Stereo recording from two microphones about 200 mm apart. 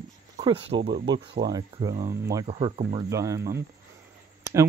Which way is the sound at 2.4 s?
30° right (ahead or behind).